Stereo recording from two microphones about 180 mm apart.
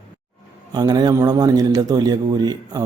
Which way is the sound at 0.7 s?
20° right (ahead or behind).